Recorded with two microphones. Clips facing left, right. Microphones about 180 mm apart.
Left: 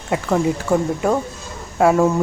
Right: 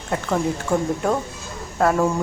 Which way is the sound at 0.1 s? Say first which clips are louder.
Left 4 dB; 5° left (ahead or behind).